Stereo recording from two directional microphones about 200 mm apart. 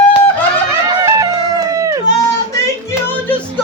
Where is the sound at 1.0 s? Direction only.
15° right (ahead or behind).